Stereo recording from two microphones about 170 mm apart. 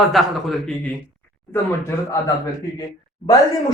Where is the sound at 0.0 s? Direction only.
Centre (ahead or behind).